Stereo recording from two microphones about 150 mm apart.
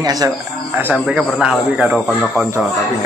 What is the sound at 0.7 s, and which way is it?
Speech, 10° right (ahead or behind).